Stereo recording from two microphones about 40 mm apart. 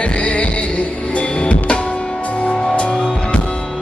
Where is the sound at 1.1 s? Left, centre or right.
Left.